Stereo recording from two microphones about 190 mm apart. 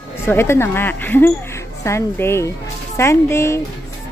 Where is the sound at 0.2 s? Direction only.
15° left (ahead or behind).